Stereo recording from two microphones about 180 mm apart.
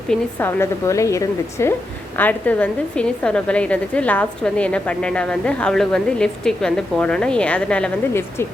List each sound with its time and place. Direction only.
0.1 s a woman's voice: 10° left (ahead or behind)